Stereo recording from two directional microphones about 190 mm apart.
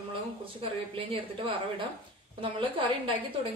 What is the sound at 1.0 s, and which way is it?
A woman's voice, 30° right (ahead or behind).